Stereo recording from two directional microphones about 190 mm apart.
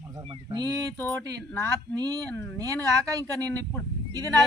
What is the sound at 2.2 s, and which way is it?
Speech, 10° left (ahead or behind).